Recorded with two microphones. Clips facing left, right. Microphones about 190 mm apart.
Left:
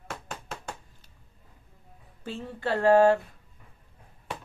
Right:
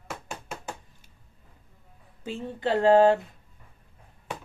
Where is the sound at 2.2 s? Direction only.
15° right (ahead or behind).